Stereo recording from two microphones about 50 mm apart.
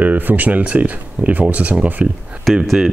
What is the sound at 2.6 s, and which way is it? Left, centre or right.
Speech, centre.